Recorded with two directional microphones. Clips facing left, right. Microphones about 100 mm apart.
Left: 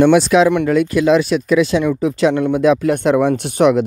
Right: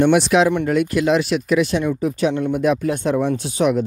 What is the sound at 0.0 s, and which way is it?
Speech, 90° left.